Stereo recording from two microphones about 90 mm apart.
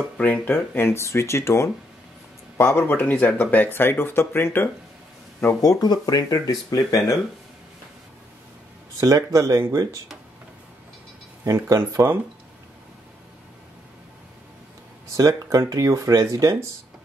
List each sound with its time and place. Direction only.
0.2 s speech: 15° left (ahead or behind)
0.7 s speech: 30° left (ahead or behind)
5.6 s speech: 45° left (ahead or behind)
9.0 s speech: 40° right (ahead or behind)
11.4 s speech: 35° right (ahead or behind)
15.1 s speech: 40° right (ahead or behind)